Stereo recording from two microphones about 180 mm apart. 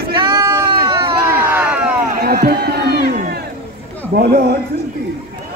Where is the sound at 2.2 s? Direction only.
55° right (ahead or behind).